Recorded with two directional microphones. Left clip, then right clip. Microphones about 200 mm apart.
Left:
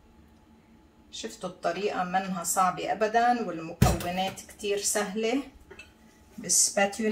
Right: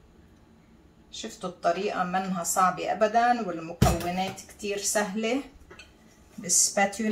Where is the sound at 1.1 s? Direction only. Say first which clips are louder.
Right 1 dB; 10° left (ahead or behind).